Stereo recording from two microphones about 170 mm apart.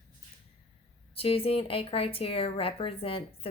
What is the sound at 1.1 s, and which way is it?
Speech, 35° left (ahead or behind).